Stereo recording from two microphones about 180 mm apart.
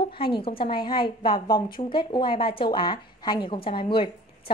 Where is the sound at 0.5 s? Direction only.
30° left (ahead or behind).